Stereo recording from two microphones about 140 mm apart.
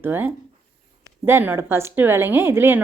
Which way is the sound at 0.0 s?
15° right (ahead or behind).